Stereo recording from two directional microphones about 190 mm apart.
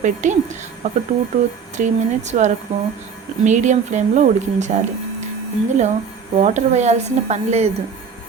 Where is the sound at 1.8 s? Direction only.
45° right (ahead or behind).